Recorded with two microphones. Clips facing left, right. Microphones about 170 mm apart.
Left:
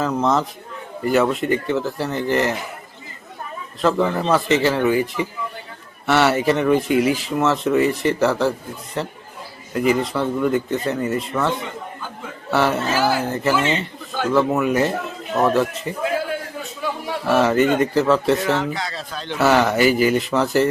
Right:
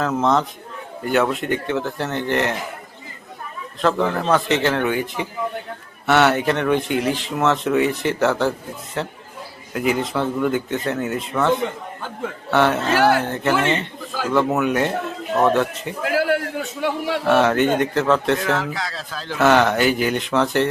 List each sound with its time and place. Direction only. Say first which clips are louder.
0.0 s speech: even; centre (ahead or behind)
3.8 s speech: left 1 dB; centre (ahead or behind)
16.0 s a sound: right 4 dB; 75° right (ahead or behind)
16.8 s a man's voice: right 3 dB; 75° right (ahead or behind)
17.2 s speech: left 1 dB; centre (ahead or behind)